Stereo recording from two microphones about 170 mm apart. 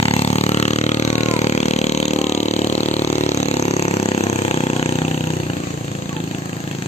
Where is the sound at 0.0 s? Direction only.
35° left (ahead or behind).